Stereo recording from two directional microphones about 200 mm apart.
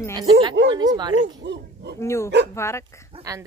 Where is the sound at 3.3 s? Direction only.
15° right (ahead or behind).